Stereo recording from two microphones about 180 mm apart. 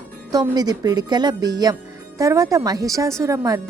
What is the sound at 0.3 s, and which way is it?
Speech, 20° right (ahead or behind).